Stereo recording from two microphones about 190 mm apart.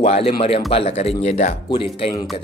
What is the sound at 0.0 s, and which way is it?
Speech, 30° left (ahead or behind).